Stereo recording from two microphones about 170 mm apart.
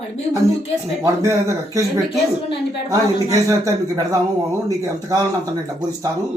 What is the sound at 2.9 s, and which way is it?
A man's voice, 20° right (ahead or behind).